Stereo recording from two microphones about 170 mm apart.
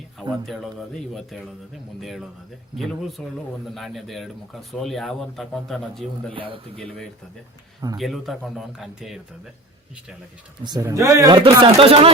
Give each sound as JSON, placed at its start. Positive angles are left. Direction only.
{"t": 0.2, "sound": "speech", "side_deg": 0}
{"t": 6.3, "sound": "speech", "side_deg": -30}
{"t": 7.9, "sound": "speech", "side_deg": 0}
{"t": 10.6, "sound": "speech", "side_deg": -20}
{"t": 11.3, "sound": "speech", "side_deg": -30}